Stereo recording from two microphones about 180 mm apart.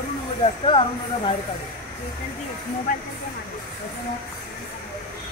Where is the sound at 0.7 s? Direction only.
30° left (ahead or behind).